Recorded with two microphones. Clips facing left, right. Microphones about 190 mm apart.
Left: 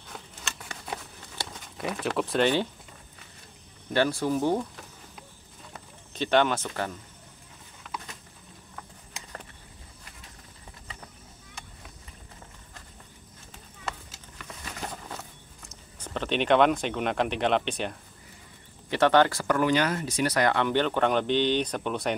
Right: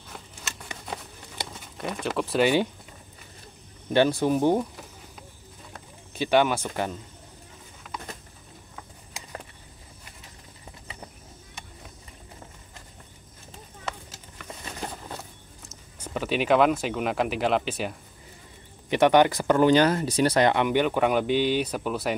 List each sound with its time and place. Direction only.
1.5 s speech: centre (ahead or behind)
3.9 s speech: 20° right (ahead or behind)
6.1 s speech: 10° right (ahead or behind)
15.6 s speech: 10° right (ahead or behind)
18.9 s speech: 15° right (ahead or behind)